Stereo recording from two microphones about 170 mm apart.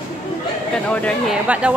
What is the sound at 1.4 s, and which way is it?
Speech, 5° right (ahead or behind).